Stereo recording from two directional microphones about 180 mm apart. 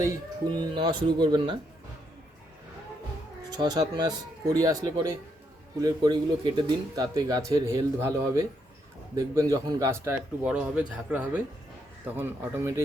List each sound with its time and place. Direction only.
0.0 s speech: 20° right (ahead or behind)
3.6 s speech: 20° right (ahead or behind)